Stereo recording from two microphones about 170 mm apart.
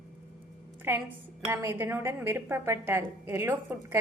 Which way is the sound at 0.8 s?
10° right (ahead or behind).